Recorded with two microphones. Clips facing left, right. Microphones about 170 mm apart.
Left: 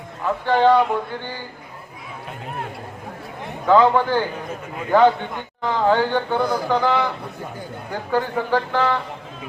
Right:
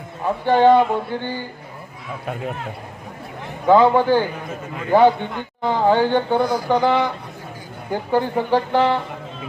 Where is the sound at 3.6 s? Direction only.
15° right (ahead or behind).